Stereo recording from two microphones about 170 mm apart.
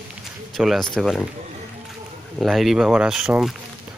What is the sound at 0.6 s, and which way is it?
Speech, centre (ahead or behind).